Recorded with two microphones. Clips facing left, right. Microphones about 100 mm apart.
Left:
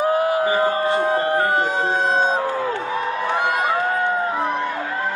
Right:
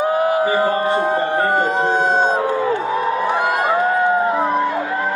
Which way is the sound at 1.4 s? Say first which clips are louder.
Right 3 dB; centre (ahead or behind).